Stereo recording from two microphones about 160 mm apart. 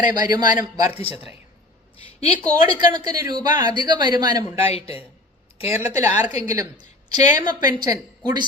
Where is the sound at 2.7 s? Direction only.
25° right (ahead or behind).